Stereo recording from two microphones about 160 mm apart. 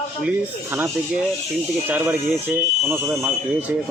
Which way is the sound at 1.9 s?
10° right (ahead or behind).